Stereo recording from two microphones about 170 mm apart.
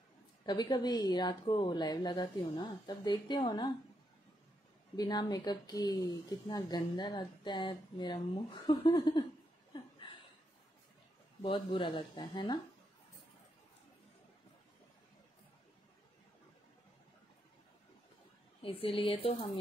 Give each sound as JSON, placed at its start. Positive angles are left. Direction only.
{"t": 0.5, "sound": "speech", "side_deg": 25}
{"t": 4.9, "sound": "speech", "side_deg": 25}
{"t": 9.7, "sound": "chuckle", "side_deg": 30}
{"t": 11.4, "sound": "speech", "side_deg": 30}
{"t": 18.6, "sound": "speech", "side_deg": 30}